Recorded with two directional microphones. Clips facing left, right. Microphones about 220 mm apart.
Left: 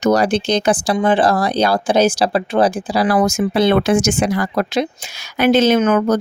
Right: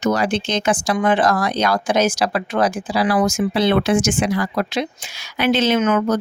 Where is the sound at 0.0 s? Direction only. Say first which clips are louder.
Left 4 dB; 40° left (ahead or behind).